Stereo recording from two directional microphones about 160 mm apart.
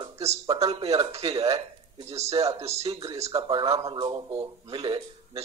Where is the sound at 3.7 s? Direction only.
20° right (ahead or behind).